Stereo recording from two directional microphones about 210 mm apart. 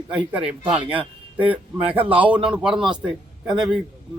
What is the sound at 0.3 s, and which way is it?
A man's voice, 5° right (ahead or behind).